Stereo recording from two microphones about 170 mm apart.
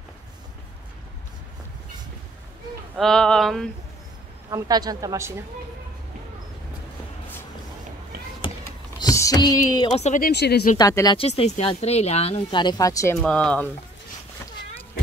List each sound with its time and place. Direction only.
3.0 s speech: 5° left (ahead or behind)
4.5 s a woman's voice: 20° right (ahead or behind)
9.0 s a sound: 20° left (ahead or behind)
9.9 s speech: 45° left (ahead or behind)
10.3 s speech: 75° left (ahead or behind)
10.8 s speech: 20° left (ahead or behind)
11.1 s speech: 35° left (ahead or behind); by 13.7 s 5° left (ahead or behind)